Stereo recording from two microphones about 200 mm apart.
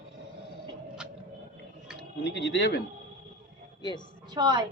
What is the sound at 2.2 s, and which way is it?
Speech, 60° left (ahead or behind).